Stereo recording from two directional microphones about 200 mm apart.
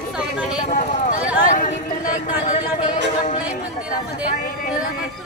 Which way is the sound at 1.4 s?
40° left (ahead or behind).